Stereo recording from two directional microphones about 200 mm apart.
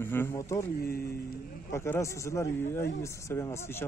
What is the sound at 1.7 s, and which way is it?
Speech, 15° left (ahead or behind).